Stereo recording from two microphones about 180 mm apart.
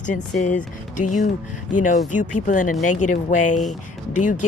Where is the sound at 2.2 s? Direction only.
45° left (ahead or behind).